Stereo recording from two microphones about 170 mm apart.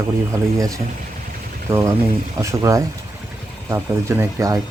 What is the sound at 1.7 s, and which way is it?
Speech, 15° right (ahead or behind).